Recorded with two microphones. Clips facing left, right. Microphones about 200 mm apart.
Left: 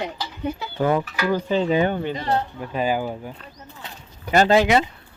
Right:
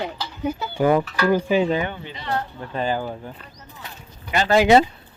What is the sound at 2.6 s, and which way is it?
Speech, 10° left (ahead or behind).